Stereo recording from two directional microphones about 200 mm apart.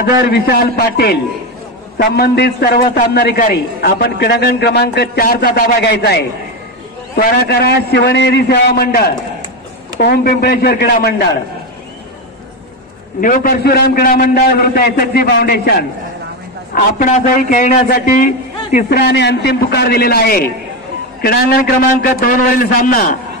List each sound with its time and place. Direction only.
0.0 s a man's voice: 55° left (ahead or behind)
13.2 s a man's voice: 45° left (ahead or behind)
21.5 s a man's voice: 45° left (ahead or behind)